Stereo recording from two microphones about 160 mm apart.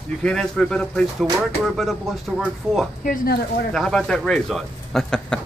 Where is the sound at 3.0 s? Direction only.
80° left.